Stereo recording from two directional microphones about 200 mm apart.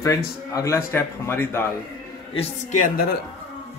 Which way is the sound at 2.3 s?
45° left (ahead or behind).